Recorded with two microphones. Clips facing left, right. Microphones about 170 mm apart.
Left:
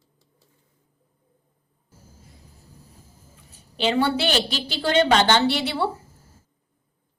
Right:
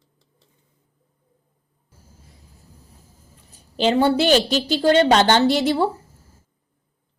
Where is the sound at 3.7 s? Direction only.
40° right (ahead or behind).